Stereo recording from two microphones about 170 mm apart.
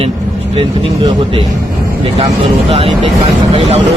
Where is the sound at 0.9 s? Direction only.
20° right (ahead or behind).